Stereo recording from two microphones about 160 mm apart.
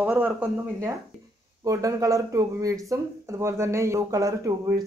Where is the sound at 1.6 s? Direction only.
20° right (ahead or behind).